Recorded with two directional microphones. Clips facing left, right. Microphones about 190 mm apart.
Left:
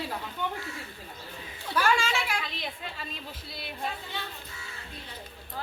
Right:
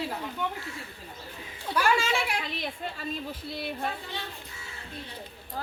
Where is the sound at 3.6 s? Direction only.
50° right (ahead or behind).